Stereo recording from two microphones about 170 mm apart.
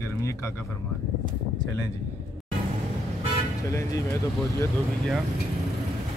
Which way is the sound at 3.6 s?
15° left (ahead or behind).